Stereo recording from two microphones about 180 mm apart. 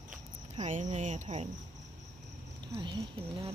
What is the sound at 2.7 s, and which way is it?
Speech, 25° right (ahead or behind).